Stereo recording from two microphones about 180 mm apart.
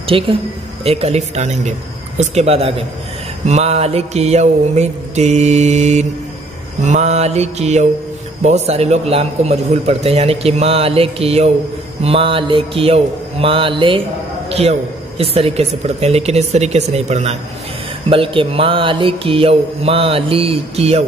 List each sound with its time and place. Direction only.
0.0 s a man's voice: 30° right (ahead or behind)
12.0 s mantra: 30° right (ahead or behind)
14.5 s a man's voice: 35° right (ahead or behind)